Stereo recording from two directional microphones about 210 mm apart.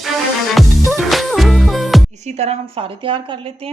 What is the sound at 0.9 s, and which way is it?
Music, centre (ahead or behind).